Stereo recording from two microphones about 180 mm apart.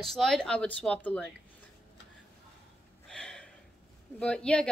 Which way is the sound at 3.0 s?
5° left (ahead or behind).